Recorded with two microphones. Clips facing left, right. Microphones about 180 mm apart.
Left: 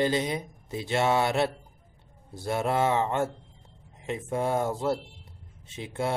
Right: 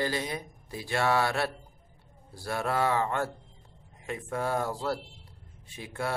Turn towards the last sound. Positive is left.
turn(degrees=20)  # may be behind; listen again after turning